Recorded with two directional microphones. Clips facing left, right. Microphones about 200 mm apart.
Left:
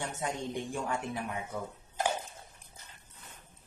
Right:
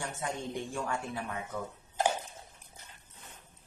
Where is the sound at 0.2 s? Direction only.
15° left (ahead or behind).